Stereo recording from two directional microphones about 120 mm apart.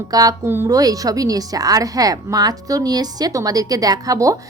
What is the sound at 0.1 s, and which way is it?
Speech, 30° right (ahead or behind).